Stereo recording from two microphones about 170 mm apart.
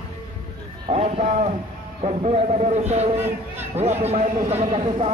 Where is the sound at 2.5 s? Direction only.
40° right (ahead or behind).